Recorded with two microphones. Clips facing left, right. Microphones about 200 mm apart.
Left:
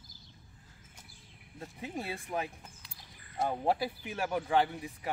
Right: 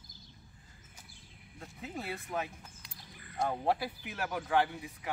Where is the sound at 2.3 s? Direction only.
20° left (ahead or behind).